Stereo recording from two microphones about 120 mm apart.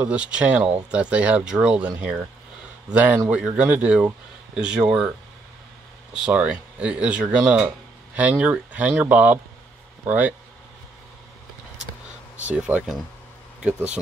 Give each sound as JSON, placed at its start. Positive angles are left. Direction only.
{"t": 0.0, "sound": "speech", "side_deg": -10}
{"t": 2.9, "sound": "speech", "side_deg": -10}
{"t": 6.1, "sound": "speech", "side_deg": -10}
{"t": 12.4, "sound": "speech", "side_deg": -10}